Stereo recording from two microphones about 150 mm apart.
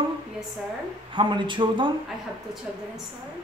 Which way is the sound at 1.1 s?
30° right (ahead or behind).